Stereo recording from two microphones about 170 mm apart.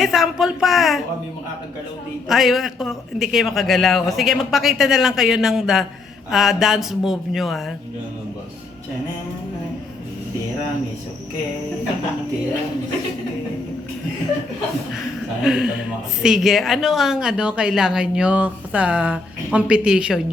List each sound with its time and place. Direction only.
0.0 s a man's voice: centre (ahead or behind)
2.3 s a man's voice: centre (ahead or behind)
15.4 s a man's voice: 5° right (ahead or behind)